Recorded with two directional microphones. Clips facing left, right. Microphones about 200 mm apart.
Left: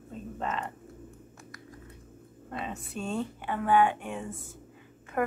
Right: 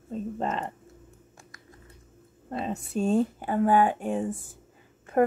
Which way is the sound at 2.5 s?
35° right (ahead or behind).